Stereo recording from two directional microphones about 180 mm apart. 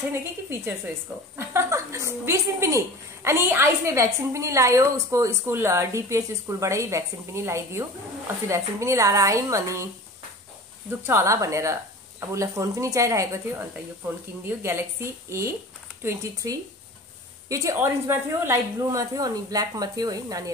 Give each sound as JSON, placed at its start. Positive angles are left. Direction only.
{"t": 0.1, "sound": "a woman's voice", "side_deg": -15}
{"t": 10.9, "sound": "a woman's voice", "side_deg": -15}